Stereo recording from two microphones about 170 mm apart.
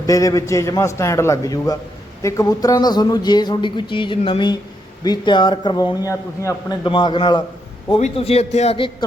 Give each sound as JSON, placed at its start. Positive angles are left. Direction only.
{"t": 0.0, "sound": "a man's voice", "side_deg": 20}
{"t": 6.8, "sound": "a man's voice", "side_deg": 30}